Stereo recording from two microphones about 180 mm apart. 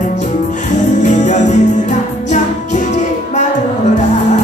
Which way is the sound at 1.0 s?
40° left (ahead or behind).